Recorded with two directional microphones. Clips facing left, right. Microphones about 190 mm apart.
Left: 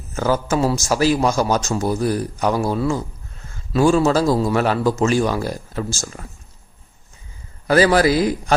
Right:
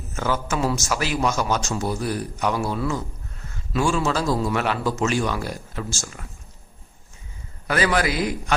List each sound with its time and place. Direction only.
0.1 s a man's voice: 35° left (ahead or behind)
7.7 s a man's voice: 35° left (ahead or behind)